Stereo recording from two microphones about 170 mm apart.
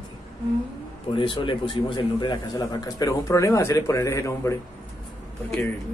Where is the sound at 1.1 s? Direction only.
30° left (ahead or behind).